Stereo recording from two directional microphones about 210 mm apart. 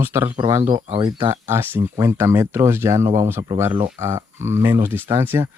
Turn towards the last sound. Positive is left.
turn(degrees=-10)  # may be behind; listen again after turning